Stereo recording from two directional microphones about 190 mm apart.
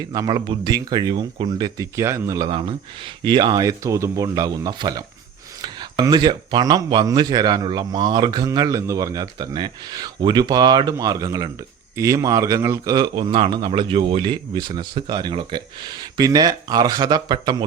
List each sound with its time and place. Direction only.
0.0 s speech: 20° right (ahead or behind)